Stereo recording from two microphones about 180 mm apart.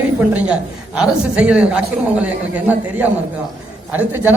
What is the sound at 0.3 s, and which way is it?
A woman's voice, 5° right (ahead or behind).